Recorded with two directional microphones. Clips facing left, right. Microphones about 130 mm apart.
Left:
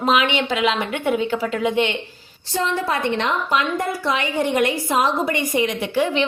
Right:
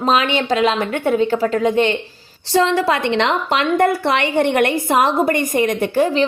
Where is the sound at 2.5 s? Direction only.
90° right.